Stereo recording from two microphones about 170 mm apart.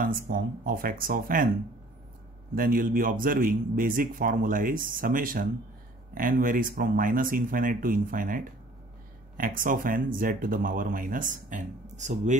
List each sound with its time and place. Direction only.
0.3 s a man's voice: 55° right (ahead or behind)
2.5 s a man's voice: 55° right (ahead or behind)
9.4 s speech: 55° right (ahead or behind)